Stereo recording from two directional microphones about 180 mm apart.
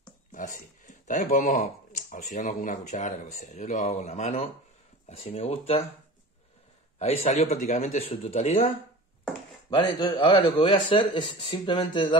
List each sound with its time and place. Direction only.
0.3 s speech: 45° left (ahead or behind)
7.0 s speech: 35° left (ahead or behind)
9.7 s a man's voice: 30° left (ahead or behind)